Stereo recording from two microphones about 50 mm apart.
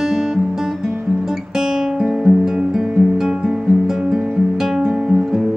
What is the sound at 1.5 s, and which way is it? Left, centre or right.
Guitar, centre.